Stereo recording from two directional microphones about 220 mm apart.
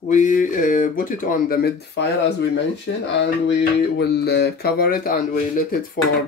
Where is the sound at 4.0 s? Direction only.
50° left (ahead or behind).